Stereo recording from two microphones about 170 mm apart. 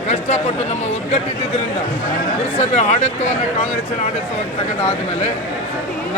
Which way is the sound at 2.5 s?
40° left (ahead or behind).